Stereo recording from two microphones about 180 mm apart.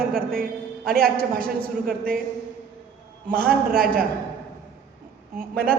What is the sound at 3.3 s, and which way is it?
Speech, 55° right (ahead or behind).